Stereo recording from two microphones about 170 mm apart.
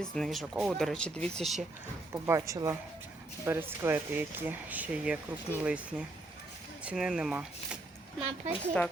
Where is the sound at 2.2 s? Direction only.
20° right (ahead or behind).